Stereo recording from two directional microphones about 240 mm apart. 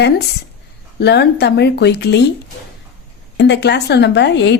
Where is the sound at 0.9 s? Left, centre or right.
Left.